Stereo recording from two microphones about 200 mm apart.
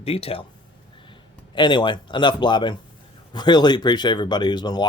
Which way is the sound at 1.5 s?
25° left (ahead or behind).